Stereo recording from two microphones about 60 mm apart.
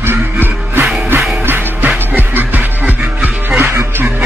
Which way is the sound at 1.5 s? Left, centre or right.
Right.